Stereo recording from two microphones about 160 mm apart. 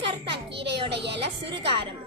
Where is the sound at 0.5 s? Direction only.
90° right.